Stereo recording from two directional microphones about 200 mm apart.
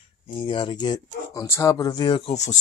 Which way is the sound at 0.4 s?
25° left (ahead or behind).